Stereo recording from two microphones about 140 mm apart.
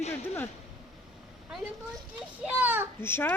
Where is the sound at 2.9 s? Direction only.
15° left (ahead or behind).